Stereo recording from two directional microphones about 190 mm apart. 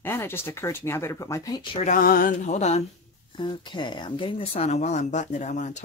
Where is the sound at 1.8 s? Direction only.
45° left (ahead or behind).